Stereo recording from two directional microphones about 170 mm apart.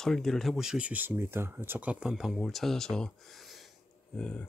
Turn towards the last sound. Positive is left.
turn(degrees=5)  # may be behind; listen again after turning